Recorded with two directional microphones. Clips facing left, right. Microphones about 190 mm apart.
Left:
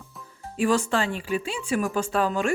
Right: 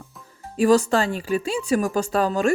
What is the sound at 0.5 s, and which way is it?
Speech, 40° right (ahead or behind).